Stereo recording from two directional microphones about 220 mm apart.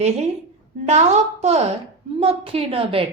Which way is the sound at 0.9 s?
30° right (ahead or behind).